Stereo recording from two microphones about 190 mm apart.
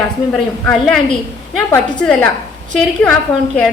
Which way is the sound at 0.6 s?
5° left (ahead or behind).